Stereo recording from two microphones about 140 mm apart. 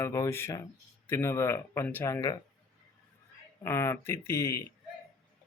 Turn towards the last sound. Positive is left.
turn(degrees=20)  # may be behind; listen again after turning